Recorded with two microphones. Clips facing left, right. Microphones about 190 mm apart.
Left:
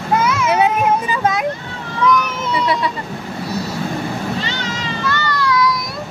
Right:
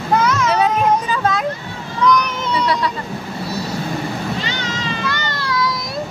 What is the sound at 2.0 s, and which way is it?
Vehicle, 5° left (ahead or behind).